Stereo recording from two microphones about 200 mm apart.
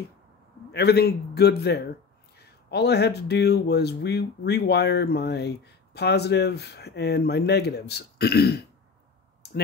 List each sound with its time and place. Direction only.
0.7 s a man's voice: 55° left (ahead or behind)